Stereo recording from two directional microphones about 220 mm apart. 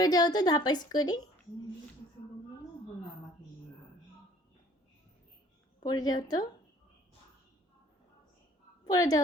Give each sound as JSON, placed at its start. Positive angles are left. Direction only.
{"t": 0.0, "sound": "a woman's voice", "side_deg": 20}
{"t": 5.8, "sound": "a woman's voice", "side_deg": 15}
{"t": 8.8, "sound": "a woman's voice", "side_deg": 15}